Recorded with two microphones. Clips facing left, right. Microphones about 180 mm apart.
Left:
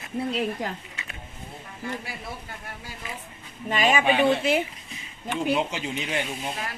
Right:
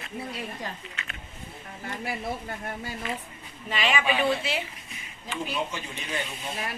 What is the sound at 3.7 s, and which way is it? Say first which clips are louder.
Speech: left 5 dB; 45° left (ahead or behind).